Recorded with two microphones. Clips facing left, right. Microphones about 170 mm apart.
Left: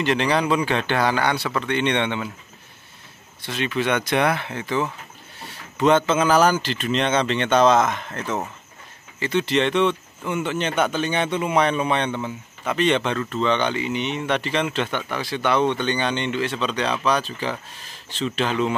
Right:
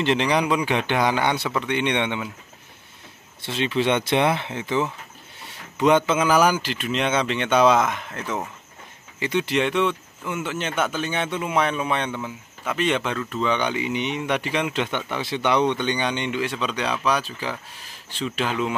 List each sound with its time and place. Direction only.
0.0 s speech: 20° right (ahead or behind)
3.4 s speech: 25° right (ahead or behind); by 18.8 s 5° right (ahead or behind)